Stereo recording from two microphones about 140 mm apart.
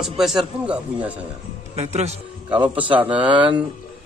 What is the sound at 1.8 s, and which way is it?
Speech, 50° right (ahead or behind).